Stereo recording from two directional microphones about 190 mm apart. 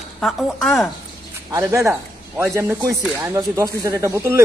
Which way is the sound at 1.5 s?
15° right (ahead or behind).